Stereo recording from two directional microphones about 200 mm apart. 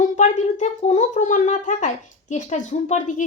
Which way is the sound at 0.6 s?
35° left (ahead or behind).